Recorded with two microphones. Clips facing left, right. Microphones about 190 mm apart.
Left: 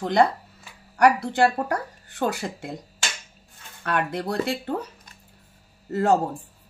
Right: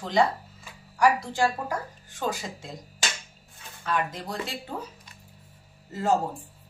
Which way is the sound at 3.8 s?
65° left (ahead or behind).